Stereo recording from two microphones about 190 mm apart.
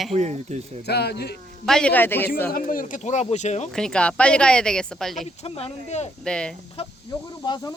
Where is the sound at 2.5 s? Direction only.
45° left (ahead or behind).